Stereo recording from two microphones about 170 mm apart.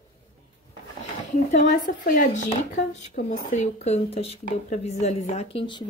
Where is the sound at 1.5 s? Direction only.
50° left (ahead or behind).